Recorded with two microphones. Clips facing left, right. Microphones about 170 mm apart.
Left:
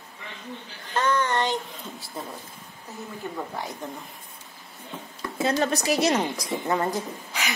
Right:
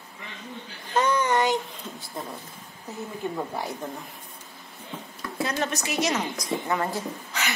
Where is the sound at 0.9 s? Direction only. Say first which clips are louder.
Right 1 dB; 10° right (ahead or behind).